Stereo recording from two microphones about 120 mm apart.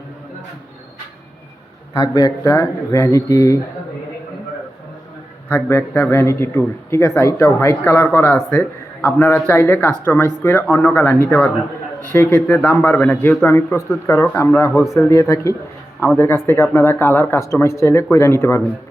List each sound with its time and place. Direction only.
1.9 s speech: 35° left (ahead or behind)
5.5 s speech: 20° left (ahead or behind)